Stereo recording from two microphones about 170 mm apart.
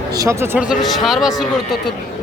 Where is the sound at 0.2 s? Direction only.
15° right (ahead or behind).